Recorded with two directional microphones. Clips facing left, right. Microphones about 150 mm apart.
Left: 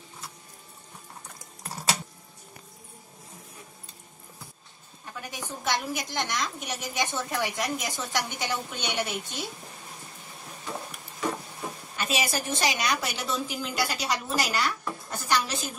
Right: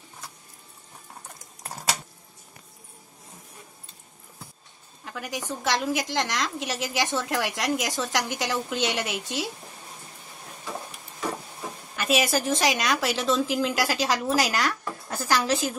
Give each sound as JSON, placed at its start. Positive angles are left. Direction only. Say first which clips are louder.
{"t": 5.0, "sound": "a woman's voice", "louder": "right 5 dB", "side_deg": -90}
{"t": 12.1, "sound": "a woman's voice", "louder": "right 6 dB", "side_deg": -90}